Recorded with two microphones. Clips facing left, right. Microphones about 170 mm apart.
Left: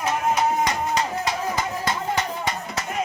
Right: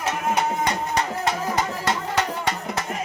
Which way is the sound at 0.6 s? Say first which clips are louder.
Left 1 dB; 60° right (ahead or behind).